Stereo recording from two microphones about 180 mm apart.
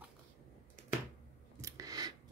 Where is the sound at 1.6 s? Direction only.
20° right (ahead or behind).